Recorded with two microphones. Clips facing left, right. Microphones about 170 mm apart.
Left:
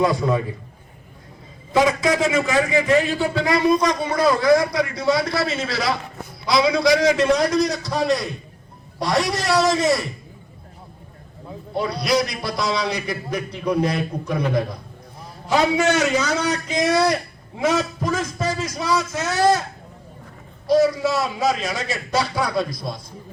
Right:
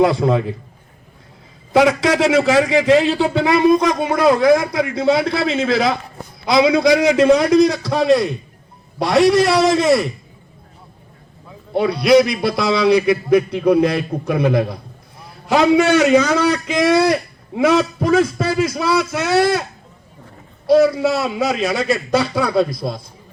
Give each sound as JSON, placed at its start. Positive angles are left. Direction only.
{"t": 0.0, "sound": "a man's voice", "side_deg": -65}
{"t": 1.7, "sound": "a man's voice", "side_deg": -75}
{"t": 3.4, "sound": "a man's voice", "side_deg": -55}
{"t": 7.3, "sound": "a man's voice", "side_deg": -60}
{"t": 11.7, "sound": "a man's voice", "side_deg": -60}
{"t": 20.7, "sound": "a man's voice", "side_deg": -65}